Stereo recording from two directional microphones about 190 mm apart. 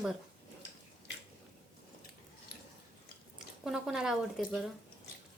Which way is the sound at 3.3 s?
Centre (ahead or behind).